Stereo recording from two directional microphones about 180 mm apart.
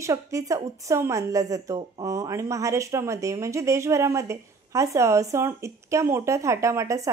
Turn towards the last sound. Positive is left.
turn(degrees=-15)  # may be behind; listen again after turning